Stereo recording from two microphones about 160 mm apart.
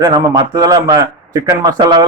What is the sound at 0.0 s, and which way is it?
A man's voice, 25° right (ahead or behind).